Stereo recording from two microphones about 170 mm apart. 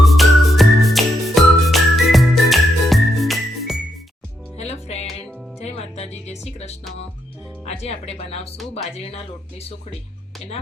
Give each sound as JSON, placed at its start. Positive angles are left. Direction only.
{"t": 0.0, "sound": "music", "side_deg": 0}
{"t": 4.5, "sound": "music", "side_deg": 40}